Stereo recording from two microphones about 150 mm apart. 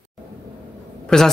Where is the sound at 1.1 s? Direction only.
Centre (ahead or behind).